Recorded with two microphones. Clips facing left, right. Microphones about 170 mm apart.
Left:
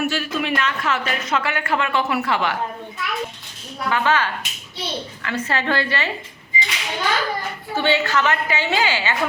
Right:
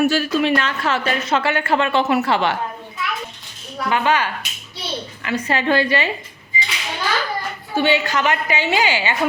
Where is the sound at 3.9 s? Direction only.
15° right (ahead or behind).